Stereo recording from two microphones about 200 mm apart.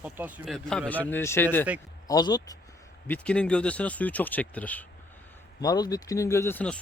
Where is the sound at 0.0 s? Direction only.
10° right (ahead or behind); by 2.6 s 20° left (ahead or behind).